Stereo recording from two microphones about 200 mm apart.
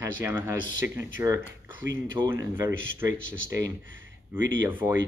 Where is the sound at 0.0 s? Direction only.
10° right (ahead or behind).